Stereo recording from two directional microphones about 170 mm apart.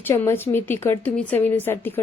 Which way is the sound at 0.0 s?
15° left (ahead or behind).